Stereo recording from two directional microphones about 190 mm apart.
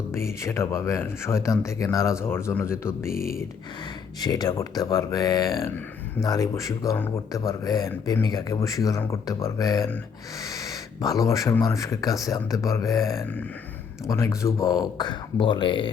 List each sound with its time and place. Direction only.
0.1 s speech: 15° left (ahead or behind)
3.1 s speech: 50° left (ahead or behind)
4.2 s speech: 20° left (ahead or behind)